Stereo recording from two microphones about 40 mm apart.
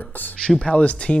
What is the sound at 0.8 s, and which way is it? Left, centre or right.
Speech, left.